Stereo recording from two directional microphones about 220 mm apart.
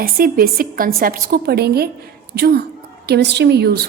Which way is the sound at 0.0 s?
40° right (ahead or behind).